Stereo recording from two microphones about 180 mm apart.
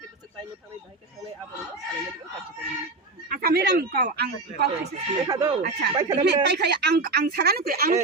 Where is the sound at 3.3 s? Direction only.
60° right (ahead or behind).